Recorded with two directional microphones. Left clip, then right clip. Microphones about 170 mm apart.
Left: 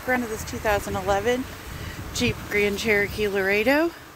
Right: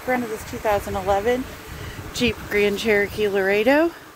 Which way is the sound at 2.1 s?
30° right (ahead or behind).